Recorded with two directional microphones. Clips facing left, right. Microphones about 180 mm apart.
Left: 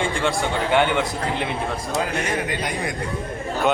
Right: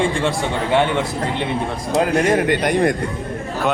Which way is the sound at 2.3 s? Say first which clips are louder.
Right 8 dB; 50° right (ahead or behind).